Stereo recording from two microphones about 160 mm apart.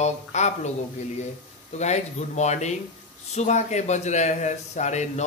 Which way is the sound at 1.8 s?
45° left (ahead or behind).